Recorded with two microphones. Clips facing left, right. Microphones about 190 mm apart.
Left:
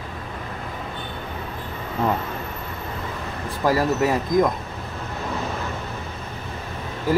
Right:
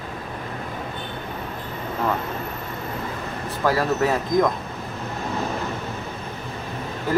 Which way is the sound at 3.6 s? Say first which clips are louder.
Left 1 dB; 10° left (ahead or behind).